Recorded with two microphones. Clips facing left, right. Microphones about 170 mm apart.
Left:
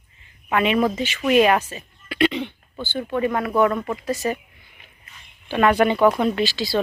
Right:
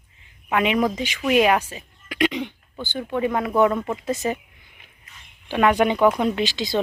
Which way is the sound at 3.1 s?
15° right (ahead or behind).